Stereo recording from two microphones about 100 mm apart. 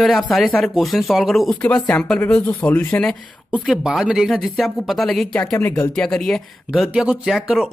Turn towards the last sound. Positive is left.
turn(degrees=-5)  # may be behind; listen again after turning